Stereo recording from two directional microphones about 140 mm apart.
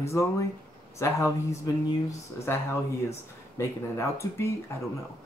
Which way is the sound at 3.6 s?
20° left (ahead or behind).